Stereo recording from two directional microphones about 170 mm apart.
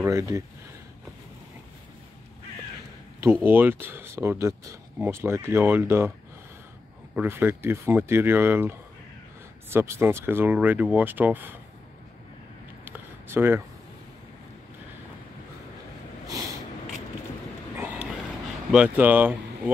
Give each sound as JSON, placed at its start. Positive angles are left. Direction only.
{"t": 0.0, "sound": "speech", "side_deg": -15}
{"t": 3.4, "sound": "speech", "side_deg": -10}
{"t": 7.2, "sound": "speech", "side_deg": -15}
{"t": 12.8, "sound": "a sound", "side_deg": -10}
{"t": 17.7, "sound": "a sound", "side_deg": -10}
{"t": 18.7, "sound": "speech", "side_deg": -5}